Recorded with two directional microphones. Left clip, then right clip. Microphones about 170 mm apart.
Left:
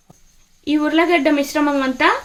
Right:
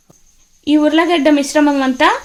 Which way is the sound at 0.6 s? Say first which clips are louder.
Right 4 dB; 50° right (ahead or behind).